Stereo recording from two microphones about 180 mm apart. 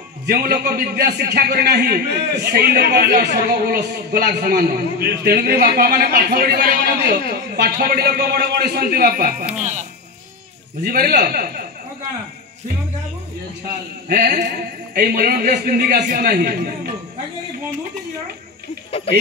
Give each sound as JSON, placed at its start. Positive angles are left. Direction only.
{"t": 0.3, "sound": "a man's voice", "side_deg": -60}
{"t": 10.8, "sound": "a man's voice", "side_deg": -60}
{"t": 14.0, "sound": "a man's voice", "side_deg": -55}